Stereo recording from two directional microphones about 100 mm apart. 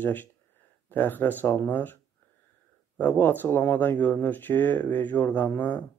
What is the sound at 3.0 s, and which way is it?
Speech, 20° left (ahead or behind).